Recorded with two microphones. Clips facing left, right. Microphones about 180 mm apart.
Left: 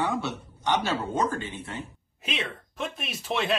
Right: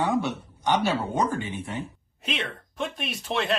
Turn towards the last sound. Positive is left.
turn(degrees=0)  # may be behind; listen again after turning